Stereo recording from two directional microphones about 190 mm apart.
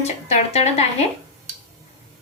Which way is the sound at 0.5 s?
35° left (ahead or behind).